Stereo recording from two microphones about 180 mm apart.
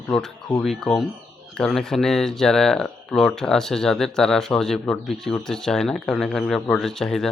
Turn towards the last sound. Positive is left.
turn(degrees=0)  # may be behind; listen again after turning